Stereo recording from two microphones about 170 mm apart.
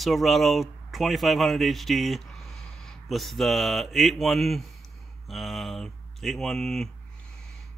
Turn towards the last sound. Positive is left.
turn(degrees=0)  # may be behind; listen again after turning